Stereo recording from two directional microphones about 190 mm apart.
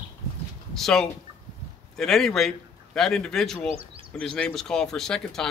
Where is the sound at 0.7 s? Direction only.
Centre (ahead or behind).